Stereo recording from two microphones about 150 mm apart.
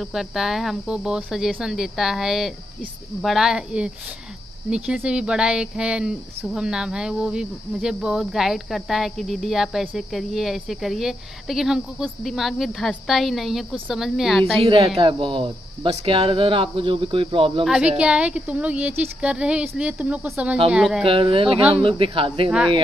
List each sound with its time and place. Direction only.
0.0 s speech: centre (ahead or behind)
14.6 s speech: 40° right (ahead or behind)
17.6 s a woman's voice: 5° right (ahead or behind)
21.0 s speech: 35° right (ahead or behind)